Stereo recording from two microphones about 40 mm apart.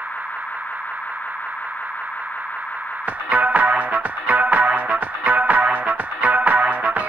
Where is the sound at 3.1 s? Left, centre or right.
Right.